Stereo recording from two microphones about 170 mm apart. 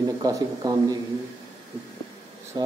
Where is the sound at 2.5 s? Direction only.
25° right (ahead or behind).